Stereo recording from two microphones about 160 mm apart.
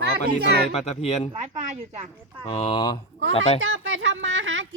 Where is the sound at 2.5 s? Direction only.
35° left (ahead or behind).